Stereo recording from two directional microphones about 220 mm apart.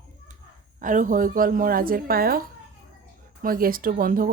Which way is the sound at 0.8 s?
35° right (ahead or behind).